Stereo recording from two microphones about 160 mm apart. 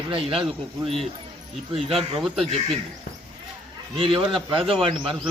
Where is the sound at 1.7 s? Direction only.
35° right (ahead or behind).